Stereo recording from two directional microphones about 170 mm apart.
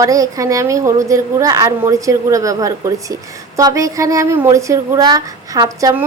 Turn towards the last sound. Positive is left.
turn(degrees=-15)  # may be behind; listen again after turning